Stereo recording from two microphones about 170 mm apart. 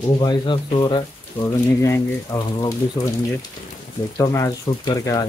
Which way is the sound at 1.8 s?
20° left (ahead or behind).